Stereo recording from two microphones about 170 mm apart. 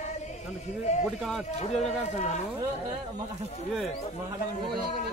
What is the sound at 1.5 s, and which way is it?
Speech, 40° left (ahead or behind).